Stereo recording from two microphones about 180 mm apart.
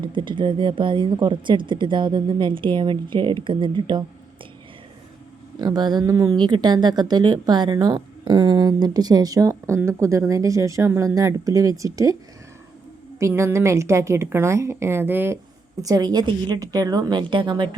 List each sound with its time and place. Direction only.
0.0 s speech: 25° right (ahead or behind)
5.5 s speech: 25° right (ahead or behind)
13.1 s a woman's voice: 15° right (ahead or behind)